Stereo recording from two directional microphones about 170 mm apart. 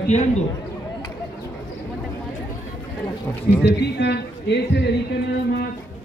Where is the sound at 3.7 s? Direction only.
85° left.